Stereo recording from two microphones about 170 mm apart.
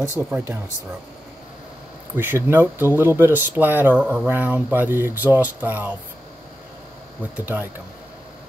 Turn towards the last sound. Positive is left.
turn(degrees=-10)  # may be behind; listen again after turning